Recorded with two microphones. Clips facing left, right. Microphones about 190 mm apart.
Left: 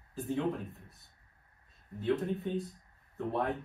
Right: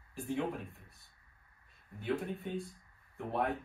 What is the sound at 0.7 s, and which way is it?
Speech, 20° left (ahead or behind).